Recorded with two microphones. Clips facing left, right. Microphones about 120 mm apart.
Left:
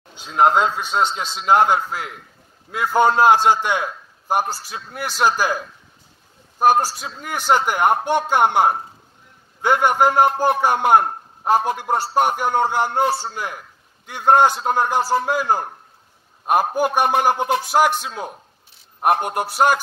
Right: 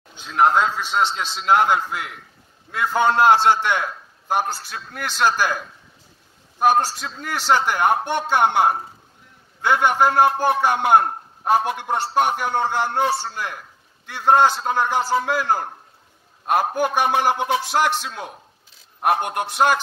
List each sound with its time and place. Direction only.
0.2 s a man's voice: 15° left (ahead or behind)
2.7 s a man's voice: 10° left (ahead or behind)
6.7 s a man's voice: 10° left (ahead or behind)